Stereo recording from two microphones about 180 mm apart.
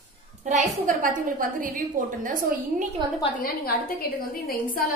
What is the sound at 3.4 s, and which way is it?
A woman's voice, 55° left (ahead or behind).